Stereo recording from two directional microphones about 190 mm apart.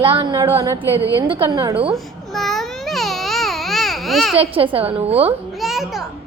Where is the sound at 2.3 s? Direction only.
Centre (ahead or behind).